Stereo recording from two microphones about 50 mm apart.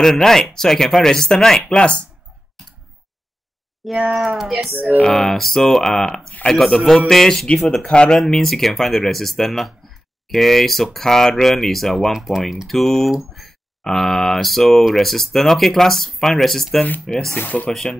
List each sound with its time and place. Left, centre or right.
0.0 s speech: centre
3.8 s speech: centre
7.8 s speech: centre
8.2 s speech: centre
17.4 s speech: left
17.6 s speech: centre